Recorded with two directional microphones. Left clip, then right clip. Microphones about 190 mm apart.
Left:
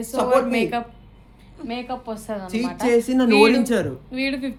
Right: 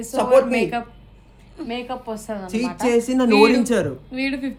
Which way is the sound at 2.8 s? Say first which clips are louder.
Even; 15° right (ahead or behind).